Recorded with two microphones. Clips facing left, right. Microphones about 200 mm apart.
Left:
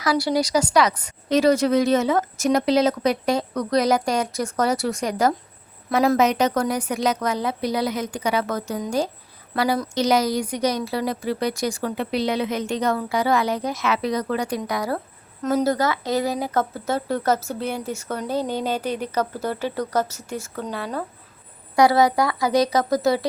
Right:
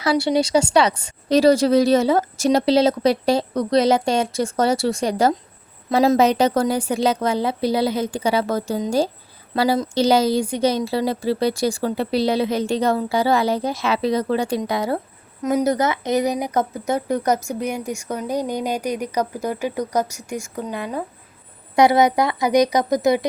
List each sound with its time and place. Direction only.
0.0 s speech: 25° right (ahead or behind)
15.4 s speech: 10° right (ahead or behind)